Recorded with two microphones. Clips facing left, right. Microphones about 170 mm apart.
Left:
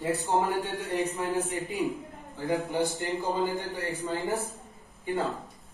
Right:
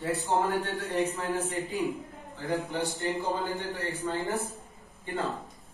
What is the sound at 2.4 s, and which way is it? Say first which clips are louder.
Speech: left 3 dB; 15° left (ahead or behind).